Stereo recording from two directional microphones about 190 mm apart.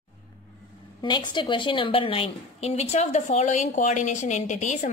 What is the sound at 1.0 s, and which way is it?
A woman's voice, 25° left (ahead or behind).